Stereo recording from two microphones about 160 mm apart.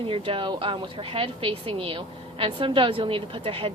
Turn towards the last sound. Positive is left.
turn(degrees=-35)  # may be behind; listen again after turning